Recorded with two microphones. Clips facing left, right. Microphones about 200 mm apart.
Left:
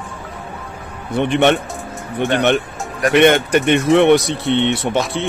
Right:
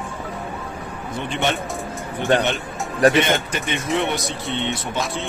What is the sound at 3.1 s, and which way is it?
Speech, 65° left (ahead or behind).